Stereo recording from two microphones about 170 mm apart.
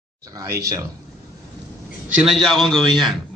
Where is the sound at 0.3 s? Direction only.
20° right (ahead or behind).